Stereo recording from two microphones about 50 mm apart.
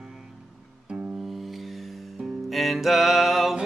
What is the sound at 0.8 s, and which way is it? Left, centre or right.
Music, right.